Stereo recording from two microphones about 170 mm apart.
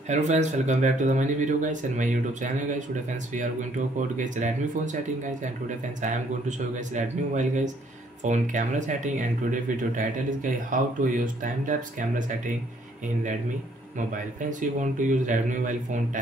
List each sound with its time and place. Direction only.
0.1 s speech: 45° right (ahead or behind)
4.2 s speech: 45° right (ahead or behind)
6.9 s speech: 45° right (ahead or behind)
14.8 s speech: 50° right (ahead or behind)